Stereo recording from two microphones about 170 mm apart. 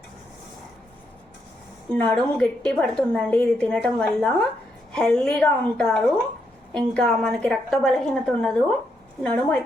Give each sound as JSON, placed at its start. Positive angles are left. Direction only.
{"t": 1.9, "sound": "a woman's voice", "side_deg": 5}